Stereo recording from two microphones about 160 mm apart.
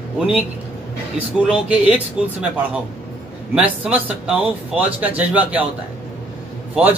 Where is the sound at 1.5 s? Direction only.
5° right (ahead or behind).